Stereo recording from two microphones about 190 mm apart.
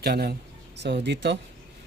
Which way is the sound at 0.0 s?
55° right (ahead or behind).